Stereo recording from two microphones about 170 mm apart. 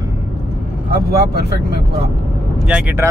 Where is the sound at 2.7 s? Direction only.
5° right (ahead or behind).